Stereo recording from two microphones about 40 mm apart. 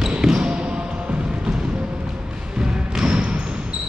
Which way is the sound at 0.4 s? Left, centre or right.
Right.